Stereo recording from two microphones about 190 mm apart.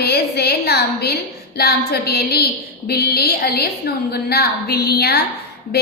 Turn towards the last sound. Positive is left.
turn(degrees=55)  # may be behind; listen again after turning